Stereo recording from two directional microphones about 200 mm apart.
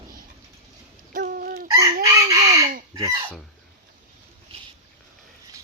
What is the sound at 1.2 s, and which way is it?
Chicken, 45° right (ahead or behind).